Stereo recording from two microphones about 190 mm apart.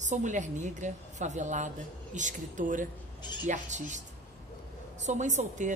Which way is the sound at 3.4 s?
40° right (ahead or behind).